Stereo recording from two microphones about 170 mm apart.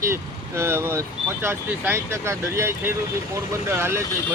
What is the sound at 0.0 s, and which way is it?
Speech, 15° right (ahead or behind).